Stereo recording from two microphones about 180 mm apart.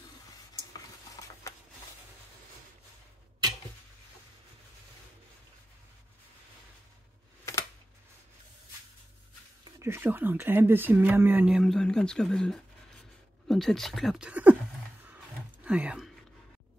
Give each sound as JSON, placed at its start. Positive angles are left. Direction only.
{"t": 0.7, "sound": "stir", "side_deg": 20}
{"t": 9.7, "sound": "speech", "side_deg": -15}
{"t": 15.0, "sound": "a sound", "side_deg": -5}